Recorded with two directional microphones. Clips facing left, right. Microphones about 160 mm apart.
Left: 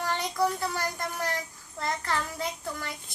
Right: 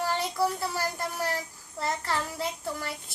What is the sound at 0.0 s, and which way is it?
A child's voice, 5° right (ahead or behind).